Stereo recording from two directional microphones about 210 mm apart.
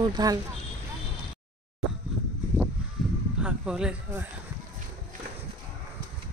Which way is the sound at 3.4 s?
5° right (ahead or behind).